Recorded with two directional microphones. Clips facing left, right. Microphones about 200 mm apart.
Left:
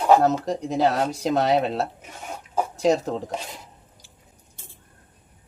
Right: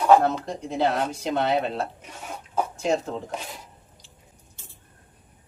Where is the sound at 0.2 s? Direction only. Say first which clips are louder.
Left 4 dB; 40° left (ahead or behind).